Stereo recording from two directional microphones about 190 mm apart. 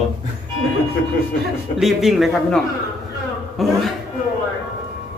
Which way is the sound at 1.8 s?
Centre (ahead or behind).